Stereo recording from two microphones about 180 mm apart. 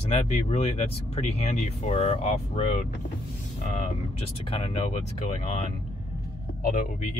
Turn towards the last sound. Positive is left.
turn(degrees=40)  # may be behind; listen again after turning